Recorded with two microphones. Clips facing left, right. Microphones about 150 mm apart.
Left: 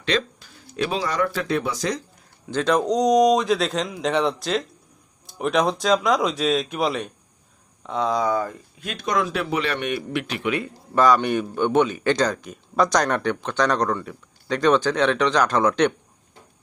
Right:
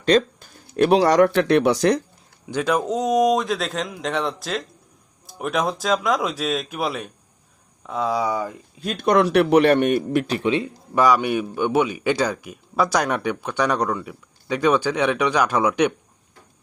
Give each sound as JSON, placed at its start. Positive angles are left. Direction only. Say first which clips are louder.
{"t": 0.0, "sound": "speech", "louder": "right 7 dB", "side_deg": -45}
{"t": 2.5, "sound": "a man's voice", "louder": "left 1 dB", "side_deg": -10}
{"t": 8.8, "sound": "speech", "louder": "right 6 dB", "side_deg": -40}
{"t": 9.0, "sound": "speech", "louder": "right 7 dB", "side_deg": -65}
{"t": 10.9, "sound": "a man's voice", "louder": "even", "side_deg": -10}